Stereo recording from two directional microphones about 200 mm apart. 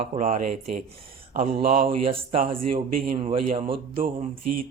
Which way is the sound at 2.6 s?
45° right (ahead or behind).